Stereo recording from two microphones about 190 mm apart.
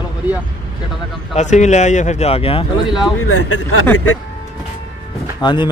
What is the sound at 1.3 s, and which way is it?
Speech, 40° left (ahead or behind).